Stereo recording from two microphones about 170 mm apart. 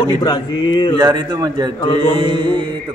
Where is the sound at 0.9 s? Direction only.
25° right (ahead or behind).